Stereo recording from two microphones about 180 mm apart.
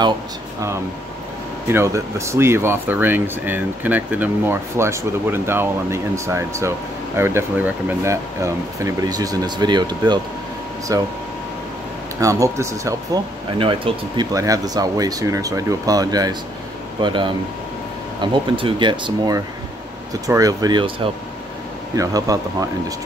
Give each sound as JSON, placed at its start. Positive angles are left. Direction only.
{"t": 1.7, "sound": "speech", "side_deg": -15}
{"t": 12.2, "sound": "speech", "side_deg": -20}
{"t": 13.6, "sound": "speech", "side_deg": -30}